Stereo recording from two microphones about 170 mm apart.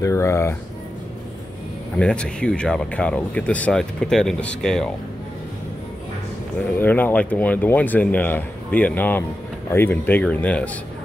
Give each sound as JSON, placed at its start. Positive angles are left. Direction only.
{"t": 0.0, "sound": "speech", "side_deg": 15}
{"t": 2.0, "sound": "speech", "side_deg": 5}
{"t": 6.8, "sound": "speech", "side_deg": 10}